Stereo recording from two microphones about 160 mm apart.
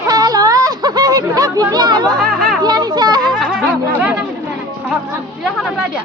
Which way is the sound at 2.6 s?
25° right (ahead or behind).